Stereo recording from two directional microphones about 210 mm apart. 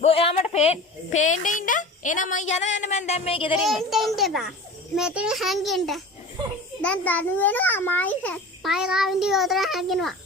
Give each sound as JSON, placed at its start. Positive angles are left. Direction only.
{"t": 0.0, "sound": "speech", "side_deg": 25}
{"t": 3.6, "sound": "a child's voice", "side_deg": 0}